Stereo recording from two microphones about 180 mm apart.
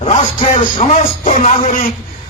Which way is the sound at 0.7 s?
35° left (ahead or behind).